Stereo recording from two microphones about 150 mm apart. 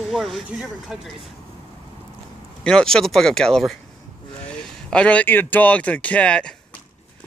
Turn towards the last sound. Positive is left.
turn(degrees=5)  # may be behind; listen again after turning